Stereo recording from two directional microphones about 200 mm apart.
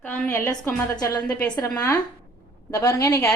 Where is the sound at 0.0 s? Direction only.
10° left (ahead or behind).